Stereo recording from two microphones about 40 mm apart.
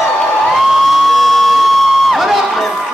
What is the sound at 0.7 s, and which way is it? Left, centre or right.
Crowd, centre.